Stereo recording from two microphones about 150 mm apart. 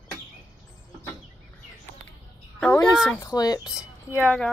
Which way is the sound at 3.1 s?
20° left (ahead or behind).